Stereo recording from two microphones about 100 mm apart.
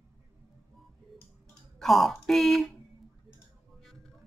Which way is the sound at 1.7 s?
Centre (ahead or behind).